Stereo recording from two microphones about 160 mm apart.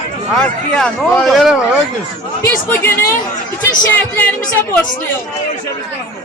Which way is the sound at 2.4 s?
15° left (ahead or behind).